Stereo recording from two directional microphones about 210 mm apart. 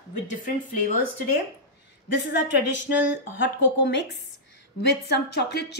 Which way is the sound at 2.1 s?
60° left (ahead or behind).